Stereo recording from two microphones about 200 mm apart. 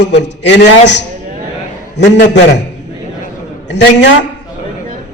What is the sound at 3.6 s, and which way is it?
Speech, 60° left (ahead or behind).